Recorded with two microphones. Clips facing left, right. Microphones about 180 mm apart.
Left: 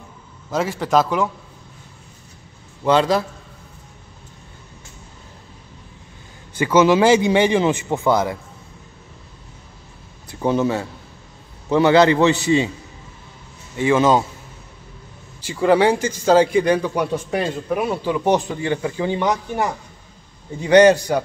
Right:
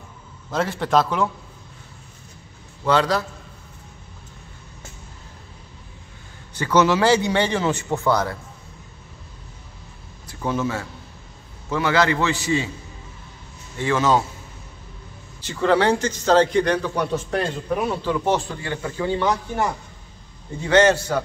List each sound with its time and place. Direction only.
0.5 s a man's voice: 5° left (ahead or behind)
2.8 s a man's voice: 20° left (ahead or behind)
6.6 s a man's voice: 15° left (ahead or behind)
10.4 s a man's voice: 30° left (ahead or behind)
13.7 s a man's voice: 15° left (ahead or behind)
15.4 s a man's voice: 10° left (ahead or behind)